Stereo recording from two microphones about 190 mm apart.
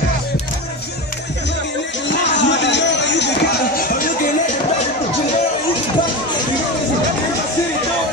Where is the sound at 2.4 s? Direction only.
70° left (ahead or behind); by 4.1 s 50° left (ahead or behind).